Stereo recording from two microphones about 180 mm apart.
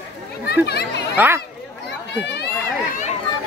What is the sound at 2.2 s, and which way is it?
Speech, 70° left (ahead or behind).